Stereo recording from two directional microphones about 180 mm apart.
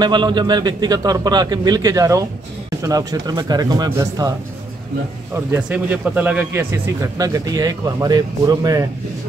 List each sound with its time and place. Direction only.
0.0 s a man's voice: 25° right (ahead or behind)
5.3 s speech: 10° right (ahead or behind)